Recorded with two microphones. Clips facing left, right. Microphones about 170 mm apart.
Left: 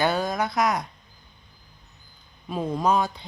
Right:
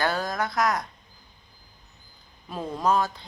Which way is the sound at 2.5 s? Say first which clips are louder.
Left 5 dB; 20° left (ahead or behind).